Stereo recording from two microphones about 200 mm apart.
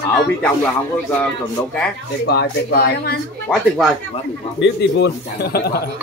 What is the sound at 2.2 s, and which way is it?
Speech, 55° left (ahead or behind).